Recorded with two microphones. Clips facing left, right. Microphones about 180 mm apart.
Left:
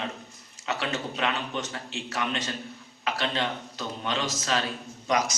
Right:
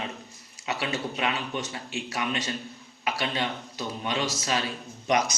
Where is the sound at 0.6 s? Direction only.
15° right (ahead or behind).